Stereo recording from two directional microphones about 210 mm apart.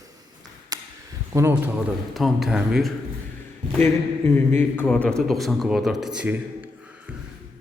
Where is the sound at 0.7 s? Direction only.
15° right (ahead or behind).